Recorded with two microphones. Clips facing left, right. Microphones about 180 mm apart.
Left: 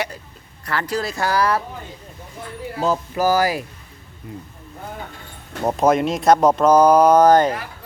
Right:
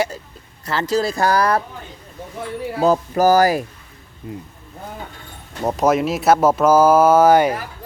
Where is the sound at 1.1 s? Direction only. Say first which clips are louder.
Left 1 dB; 40° right (ahead or behind).